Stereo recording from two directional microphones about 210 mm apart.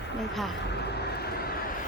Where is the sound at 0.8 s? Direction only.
50° left (ahead or behind).